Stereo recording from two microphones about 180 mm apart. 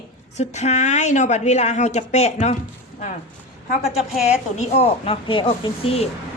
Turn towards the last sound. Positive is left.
turn(degrees=30)  # may be behind; listen again after turning